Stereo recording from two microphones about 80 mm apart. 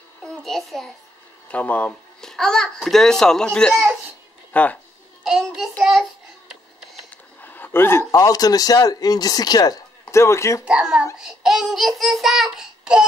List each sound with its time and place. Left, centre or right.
0.2 s a child's voice: centre
1.5 s speech: centre
2.3 s a child's voice: centre
4.5 s speech: centre
5.2 s a child's voice: centre
7.4 s speech: left
10.1 s speech: left
10.6 s a child's voice: centre
11.1 s a sound: centre